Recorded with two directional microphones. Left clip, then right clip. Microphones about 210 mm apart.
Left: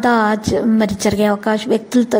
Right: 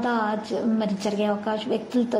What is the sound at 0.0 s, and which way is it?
A woman's voice, 45° left (ahead or behind).